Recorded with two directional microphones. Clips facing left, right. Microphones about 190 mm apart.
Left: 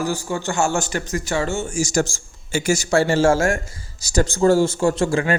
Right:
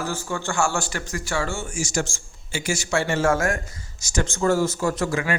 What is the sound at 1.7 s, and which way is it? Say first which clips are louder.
A man's voice: left 6 dB; 40° left (ahead or behind).